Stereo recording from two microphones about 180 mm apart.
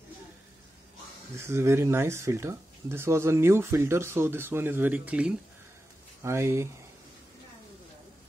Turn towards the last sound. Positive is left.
turn(degrees=-15)  # may be behind; listen again after turning